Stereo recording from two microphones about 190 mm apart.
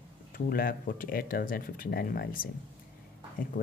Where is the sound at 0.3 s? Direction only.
50° left (ahead or behind).